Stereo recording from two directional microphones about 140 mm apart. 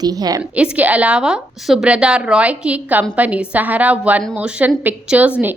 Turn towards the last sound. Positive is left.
turn(degrees=-10)  # may be behind; listen again after turning